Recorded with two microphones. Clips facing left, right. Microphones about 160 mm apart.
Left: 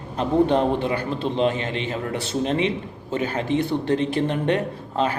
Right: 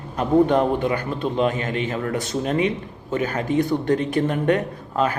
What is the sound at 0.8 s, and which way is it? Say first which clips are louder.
A man's voice: right 1 dB; 30° left (ahead or behind).